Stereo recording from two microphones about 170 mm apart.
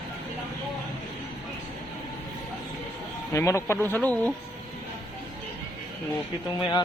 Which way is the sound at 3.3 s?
15° left (ahead or behind).